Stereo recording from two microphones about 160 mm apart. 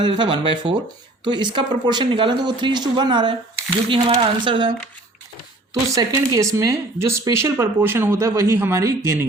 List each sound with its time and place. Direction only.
0.0 s speech: 30° right (ahead or behind)
5.9 s speech: 20° right (ahead or behind)